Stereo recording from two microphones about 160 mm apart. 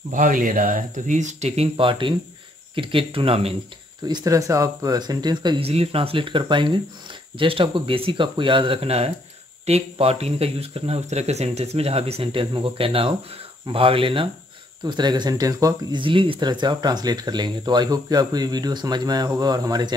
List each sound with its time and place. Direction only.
0.1 s speech: 55° right (ahead or behind); by 3.5 s 35° right (ahead or behind)
4.1 s speech: 20° right (ahead or behind)